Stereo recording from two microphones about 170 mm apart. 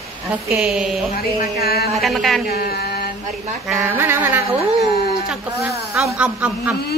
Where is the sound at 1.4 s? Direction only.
65° left (ahead or behind).